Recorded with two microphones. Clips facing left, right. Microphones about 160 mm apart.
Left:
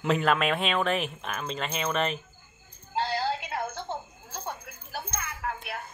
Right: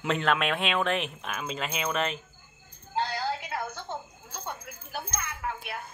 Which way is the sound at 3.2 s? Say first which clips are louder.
Left 2 dB; 20° left (ahead or behind).